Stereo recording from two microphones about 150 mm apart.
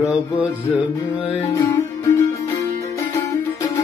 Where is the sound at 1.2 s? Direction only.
35° left (ahead or behind).